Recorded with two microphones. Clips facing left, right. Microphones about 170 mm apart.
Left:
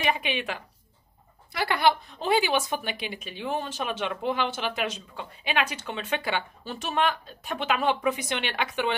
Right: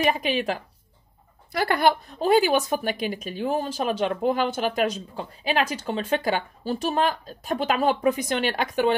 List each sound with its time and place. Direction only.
0.0 s a woman's voice: 40° right (ahead or behind)